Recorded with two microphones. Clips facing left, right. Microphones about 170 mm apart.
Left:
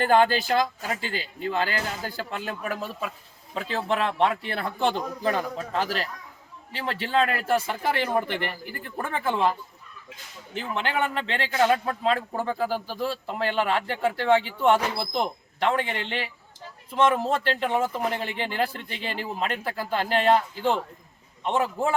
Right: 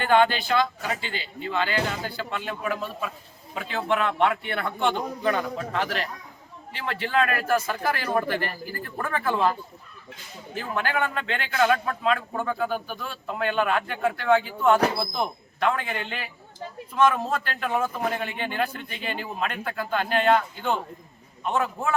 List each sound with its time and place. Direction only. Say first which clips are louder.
0.0 s a man's voice: even; 40° left (ahead or behind)
15.6 s a man's voice: left 1 dB; 25° left (ahead or behind)